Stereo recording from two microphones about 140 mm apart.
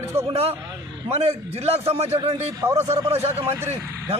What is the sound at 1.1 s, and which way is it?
A man's voice, 50° right (ahead or behind).